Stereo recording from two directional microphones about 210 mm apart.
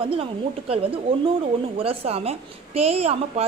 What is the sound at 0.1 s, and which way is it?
Speech, 25° right (ahead or behind).